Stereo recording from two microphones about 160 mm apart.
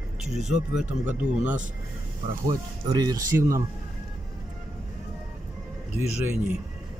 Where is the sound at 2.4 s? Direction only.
25° right (ahead or behind).